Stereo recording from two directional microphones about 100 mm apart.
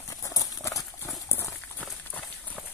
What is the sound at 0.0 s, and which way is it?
Horse, 35° left (ahead or behind).